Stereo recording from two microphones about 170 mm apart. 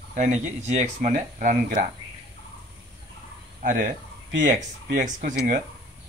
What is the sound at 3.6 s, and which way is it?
Speech, 50° right (ahead or behind).